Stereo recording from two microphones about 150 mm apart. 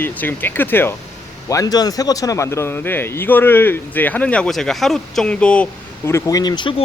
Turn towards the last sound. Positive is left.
turn(degrees=35)  # may be behind; listen again after turning